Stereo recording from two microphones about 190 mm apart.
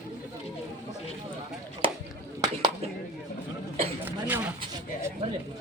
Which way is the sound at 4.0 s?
10° right (ahead or behind).